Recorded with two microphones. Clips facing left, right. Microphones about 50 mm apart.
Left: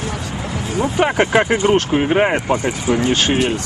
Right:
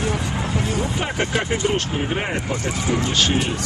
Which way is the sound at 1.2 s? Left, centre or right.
Left.